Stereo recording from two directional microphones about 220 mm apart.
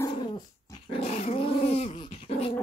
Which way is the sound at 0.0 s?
20° left (ahead or behind).